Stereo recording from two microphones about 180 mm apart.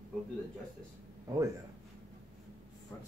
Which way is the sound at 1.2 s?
20° right (ahead or behind).